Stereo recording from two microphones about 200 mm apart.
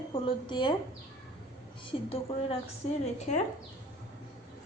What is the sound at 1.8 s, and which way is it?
A woman's voice, 30° left (ahead or behind).